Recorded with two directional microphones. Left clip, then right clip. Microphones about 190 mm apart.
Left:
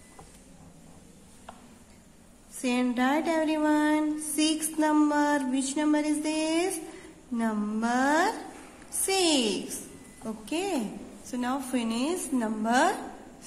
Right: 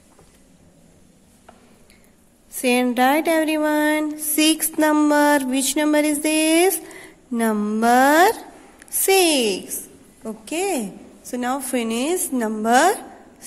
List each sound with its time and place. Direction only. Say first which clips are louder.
2.6 s music: right 10 dB; 45° right (ahead or behind)
9.0 s a woman's voice: right 9 dB; 40° right (ahead or behind)